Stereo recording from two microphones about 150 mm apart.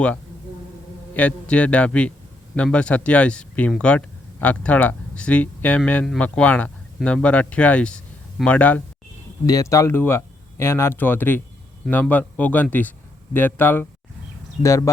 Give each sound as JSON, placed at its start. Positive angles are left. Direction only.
{"t": 1.1, "sound": "speech", "side_deg": 10}
{"t": 9.5, "sound": "speech", "side_deg": 20}